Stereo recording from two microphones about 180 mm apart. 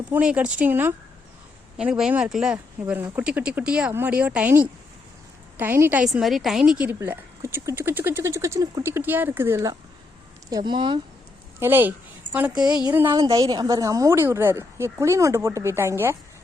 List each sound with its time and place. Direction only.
0.1 s a woman's voice: 5° right (ahead or behind)
10.5 s speech: 25° right (ahead or behind)
11.6 s a woman's voice: 10° right (ahead or behind)
13.1 s a woman's voice: 25° right (ahead or behind)